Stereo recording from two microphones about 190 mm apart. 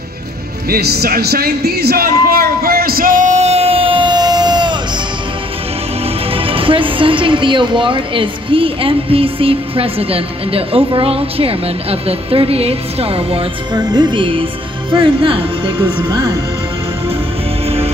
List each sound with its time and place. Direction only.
0.7 s music: 55° right (ahead or behind); by 4.7 s 20° right (ahead or behind)
6.3 s a woman's voice: 30° right (ahead or behind)
17.6 s music: 30° right (ahead or behind)